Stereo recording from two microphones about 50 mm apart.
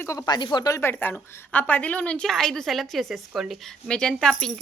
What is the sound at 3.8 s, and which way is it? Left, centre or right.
Speech, centre.